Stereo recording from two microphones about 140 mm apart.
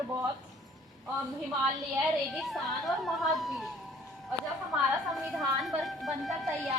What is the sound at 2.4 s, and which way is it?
A woman's voice, centre (ahead or behind).